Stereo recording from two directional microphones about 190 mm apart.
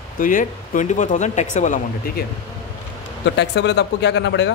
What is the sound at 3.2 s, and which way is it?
Speech, 65° left (ahead or behind).